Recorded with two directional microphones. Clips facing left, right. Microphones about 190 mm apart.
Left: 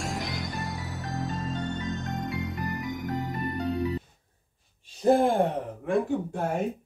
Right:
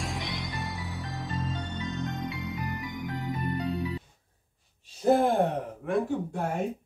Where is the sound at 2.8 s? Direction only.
45° left (ahead or behind).